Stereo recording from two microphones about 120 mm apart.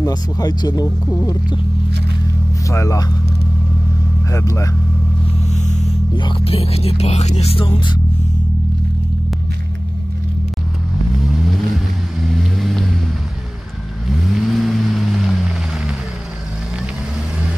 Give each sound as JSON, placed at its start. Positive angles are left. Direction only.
{"t": 0.0, "sound": "speech", "side_deg": 30}
{"t": 2.6, "sound": "speech", "side_deg": 25}
{"t": 4.3, "sound": "speech", "side_deg": 25}
{"t": 5.5, "sound": "a sound", "side_deg": 75}
{"t": 6.1, "sound": "music", "side_deg": 45}
{"t": 12.3, "sound": "vehicle", "side_deg": 0}
{"t": 14.3, "sound": "vehicle", "side_deg": 0}